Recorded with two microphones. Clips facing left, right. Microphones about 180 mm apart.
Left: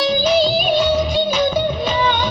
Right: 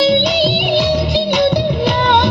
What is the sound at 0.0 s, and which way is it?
Music, 90° right.